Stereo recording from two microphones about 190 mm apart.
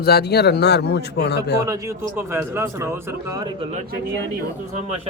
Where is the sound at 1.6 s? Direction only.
15° right (ahead or behind).